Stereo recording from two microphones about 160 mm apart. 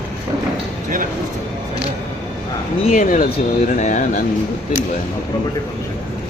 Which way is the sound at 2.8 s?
50° left (ahead or behind).